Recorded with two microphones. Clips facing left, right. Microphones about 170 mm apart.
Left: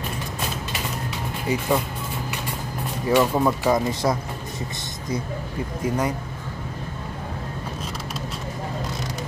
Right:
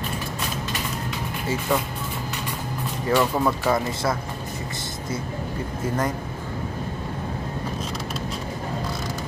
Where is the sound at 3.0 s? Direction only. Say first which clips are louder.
Left 2 dB; 10° left (ahead or behind).